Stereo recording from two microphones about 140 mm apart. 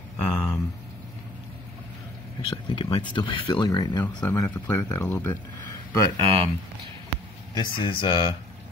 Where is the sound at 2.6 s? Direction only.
35° left (ahead or behind).